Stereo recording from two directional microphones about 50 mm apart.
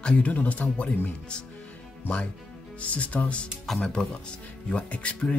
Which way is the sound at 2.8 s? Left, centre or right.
Left.